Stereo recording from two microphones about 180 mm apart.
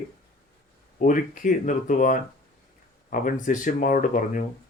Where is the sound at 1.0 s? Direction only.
50° left (ahead or behind).